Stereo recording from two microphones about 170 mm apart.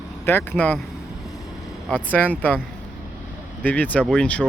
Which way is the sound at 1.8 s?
10° left (ahead or behind).